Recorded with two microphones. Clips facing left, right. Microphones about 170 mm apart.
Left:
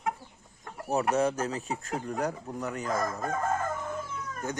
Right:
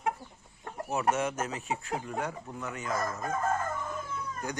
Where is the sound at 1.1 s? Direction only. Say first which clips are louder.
Left 5 dB; 35° left (ahead or behind).